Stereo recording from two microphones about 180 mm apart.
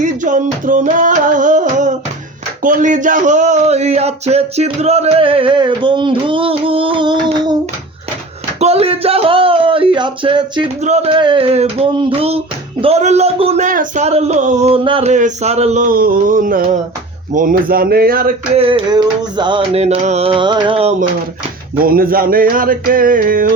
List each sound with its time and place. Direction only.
0.0 s music: 45° right (ahead or behind)
2.6 s speech: 45° right (ahead or behind); by 7.5 s 25° right (ahead or behind)
8.6 s speech: 35° right (ahead or behind)
10.8 s speech: 35° right (ahead or behind); by 18.3 s 55° right (ahead or behind)
18.5 s speech: 30° right (ahead or behind)
21.8 s a sound: 55° right (ahead or behind)